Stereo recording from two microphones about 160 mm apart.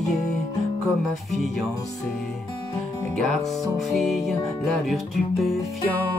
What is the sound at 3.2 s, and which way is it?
Music, centre (ahead or behind).